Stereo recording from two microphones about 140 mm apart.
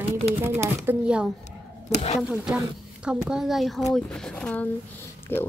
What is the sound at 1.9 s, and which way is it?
Speech, 50° left (ahead or behind).